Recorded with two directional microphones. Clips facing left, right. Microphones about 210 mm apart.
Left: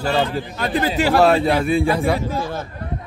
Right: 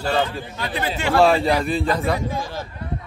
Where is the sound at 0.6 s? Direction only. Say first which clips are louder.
Left 6 dB; 40° left (ahead or behind).